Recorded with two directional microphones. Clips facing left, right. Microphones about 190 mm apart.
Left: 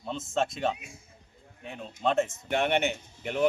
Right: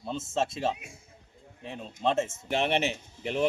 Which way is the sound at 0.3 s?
30° right (ahead or behind).